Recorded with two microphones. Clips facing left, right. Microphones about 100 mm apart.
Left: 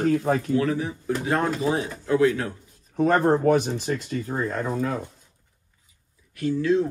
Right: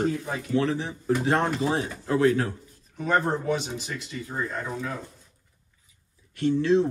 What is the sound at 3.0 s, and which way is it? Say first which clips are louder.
Speech: left 6 dB; 50° left (ahead or behind).